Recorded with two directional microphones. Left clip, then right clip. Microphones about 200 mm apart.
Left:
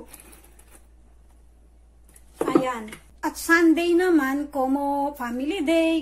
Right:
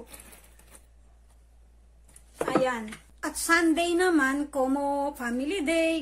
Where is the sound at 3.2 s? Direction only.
15° right (ahead or behind).